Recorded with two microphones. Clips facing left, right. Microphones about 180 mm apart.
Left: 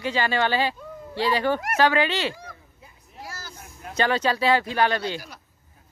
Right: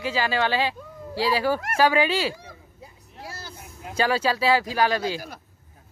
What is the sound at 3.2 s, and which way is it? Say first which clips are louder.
Vehicle: right 1 dB; 30° right (ahead or behind).